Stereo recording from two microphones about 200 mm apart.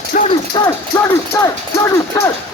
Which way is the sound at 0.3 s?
20° left (ahead or behind).